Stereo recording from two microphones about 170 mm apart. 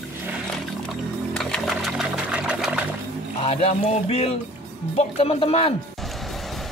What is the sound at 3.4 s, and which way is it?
Speech, 35° left (ahead or behind).